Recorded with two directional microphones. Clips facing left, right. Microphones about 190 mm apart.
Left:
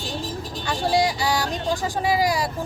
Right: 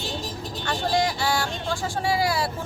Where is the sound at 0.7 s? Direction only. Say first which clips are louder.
Left 3 dB; 15° left (ahead or behind).